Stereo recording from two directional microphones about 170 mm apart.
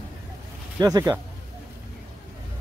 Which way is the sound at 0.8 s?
20° right (ahead or behind).